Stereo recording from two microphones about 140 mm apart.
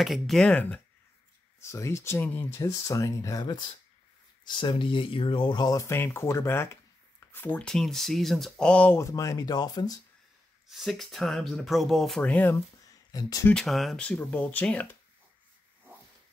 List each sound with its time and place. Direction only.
0.0 s speech: centre (ahead or behind)
1.6 s speech: 20° left (ahead or behind)
9.0 s speech: 25° left (ahead or behind)
10.7 s speech: centre (ahead or behind)
13.1 s speech: 25° left (ahead or behind)
13.5 s speech: 5° left (ahead or behind)